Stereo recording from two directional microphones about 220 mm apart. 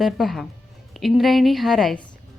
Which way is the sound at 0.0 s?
Centre (ahead or behind).